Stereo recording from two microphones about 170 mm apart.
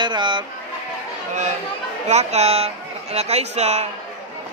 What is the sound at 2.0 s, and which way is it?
Speech, 40° right (ahead or behind).